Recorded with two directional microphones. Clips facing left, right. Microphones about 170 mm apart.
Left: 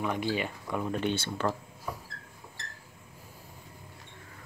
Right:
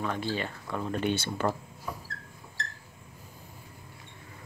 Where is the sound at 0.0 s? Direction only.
15° left (ahead or behind).